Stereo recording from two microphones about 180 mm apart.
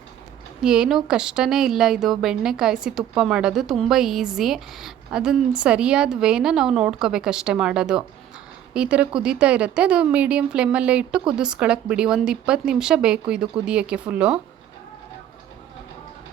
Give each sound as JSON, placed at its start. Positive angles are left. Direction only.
{"t": 0.6, "sound": "speech", "side_deg": -5}